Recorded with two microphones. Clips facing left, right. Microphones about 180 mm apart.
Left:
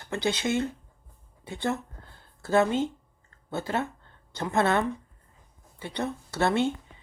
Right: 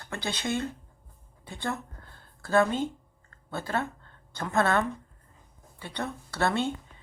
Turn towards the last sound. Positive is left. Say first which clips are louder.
# left 3 dB
turn(degrees=20)  # may be behind; listen again after turning